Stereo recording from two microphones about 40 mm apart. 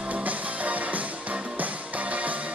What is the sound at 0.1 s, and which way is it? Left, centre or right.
Music, right.